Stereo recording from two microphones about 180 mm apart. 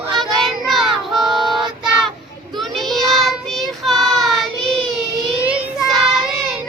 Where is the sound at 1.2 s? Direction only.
25° right (ahead or behind).